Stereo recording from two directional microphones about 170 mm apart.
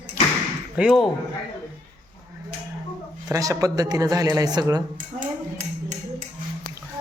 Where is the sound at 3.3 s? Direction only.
20° right (ahead or behind).